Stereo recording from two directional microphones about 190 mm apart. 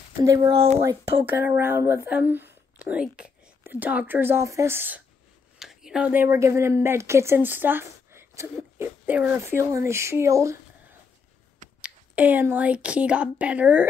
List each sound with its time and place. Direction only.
0.2 s speech: 15° right (ahead or behind)
0.5 s speech: 30° right (ahead or behind)
0.7 s speech: 15° right (ahead or behind)
11.8 s a woman's voice: 10° right (ahead or behind)